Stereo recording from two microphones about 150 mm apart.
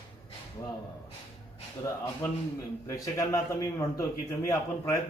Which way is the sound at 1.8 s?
20° left (ahead or behind).